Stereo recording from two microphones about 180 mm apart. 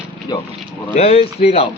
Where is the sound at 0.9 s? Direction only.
35° left (ahead or behind).